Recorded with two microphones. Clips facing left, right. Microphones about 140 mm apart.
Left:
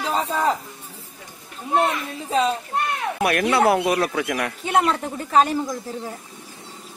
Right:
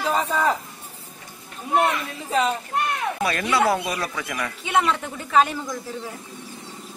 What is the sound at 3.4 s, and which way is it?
Speech, 30° left (ahead or behind).